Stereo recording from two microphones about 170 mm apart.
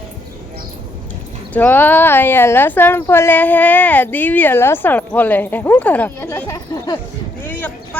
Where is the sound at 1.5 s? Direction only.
10° left (ahead or behind).